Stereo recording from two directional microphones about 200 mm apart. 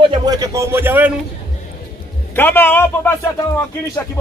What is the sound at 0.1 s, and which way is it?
A man's voice, 20° right (ahead or behind).